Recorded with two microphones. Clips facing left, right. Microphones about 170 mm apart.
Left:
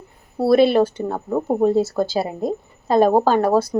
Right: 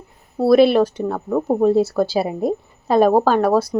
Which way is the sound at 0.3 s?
Centre (ahead or behind).